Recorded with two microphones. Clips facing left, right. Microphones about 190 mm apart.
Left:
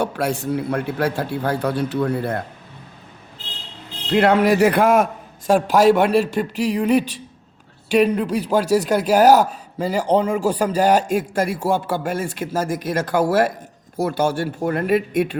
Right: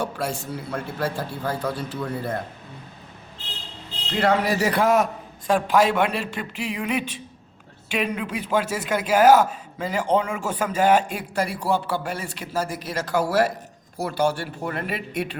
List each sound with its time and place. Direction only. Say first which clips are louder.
0.0 s a man's voice: left 6 dB; 65° left (ahead or behind)
4.1 s a man's voice: left 6 dB; 60° left (ahead or behind)
5.5 s a man's voice: left 5 dB; 45° left (ahead or behind)